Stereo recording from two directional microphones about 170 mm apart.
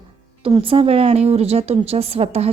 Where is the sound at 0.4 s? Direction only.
30° right (ahead or behind).